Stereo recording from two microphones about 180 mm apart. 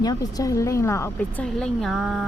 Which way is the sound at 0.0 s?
20° left (ahead or behind).